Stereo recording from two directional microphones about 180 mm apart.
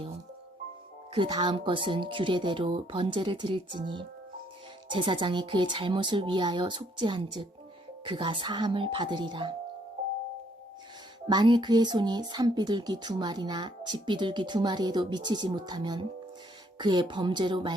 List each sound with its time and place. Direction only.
1.1 s speech: 25° right (ahead or behind)
11.3 s speech: 25° right (ahead or behind)